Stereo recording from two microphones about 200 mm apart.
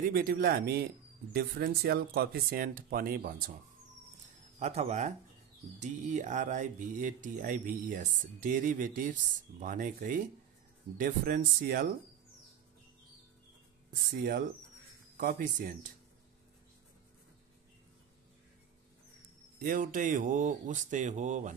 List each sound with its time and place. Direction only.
0.1 s speech: 50° right (ahead or behind)
4.6 s speech: 35° right (ahead or behind)
15.1 s speech: 45° right (ahead or behind)
19.6 s speech: 40° right (ahead or behind)